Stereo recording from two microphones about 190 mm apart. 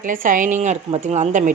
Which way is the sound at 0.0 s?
45° right (ahead or behind).